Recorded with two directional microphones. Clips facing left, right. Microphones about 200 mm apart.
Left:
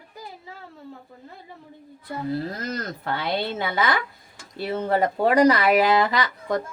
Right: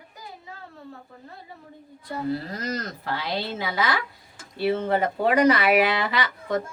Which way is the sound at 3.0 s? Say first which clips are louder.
Left 3 dB; 55° left (ahead or behind).